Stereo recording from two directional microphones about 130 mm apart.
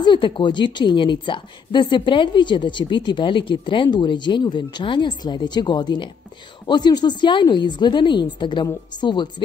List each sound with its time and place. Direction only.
0.0 s a woman's voice: 40° left (ahead or behind)